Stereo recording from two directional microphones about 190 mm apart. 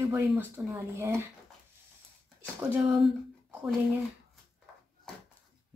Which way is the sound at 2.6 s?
5° right (ahead or behind).